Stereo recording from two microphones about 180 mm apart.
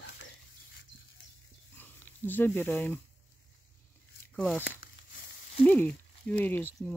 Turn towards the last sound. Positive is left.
turn(degrees=10)  # may be behind; listen again after turning